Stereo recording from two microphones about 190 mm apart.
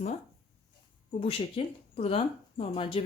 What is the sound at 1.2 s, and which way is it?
Speech, 30° left (ahead or behind).